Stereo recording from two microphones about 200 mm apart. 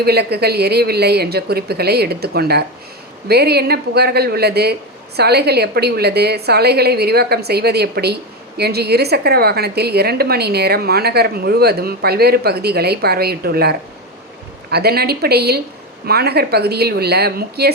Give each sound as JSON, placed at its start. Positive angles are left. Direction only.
{"t": 0.0, "sound": "speech", "side_deg": -55}